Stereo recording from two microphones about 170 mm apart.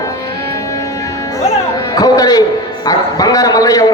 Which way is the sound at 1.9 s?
20° left (ahead or behind).